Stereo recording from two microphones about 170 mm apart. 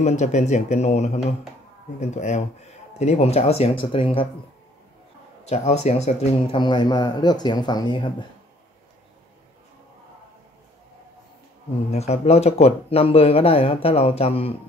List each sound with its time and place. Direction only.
0.0 s speech: 45° left (ahead or behind)
5.4 s speech: 40° left (ahead or behind)
6.6 s speech: 25° left (ahead or behind)
11.9 s speech: 40° left (ahead or behind)